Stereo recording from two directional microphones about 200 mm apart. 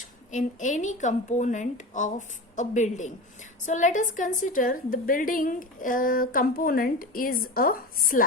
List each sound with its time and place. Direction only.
0.0 s a woman's voice: 40° left (ahead or behind)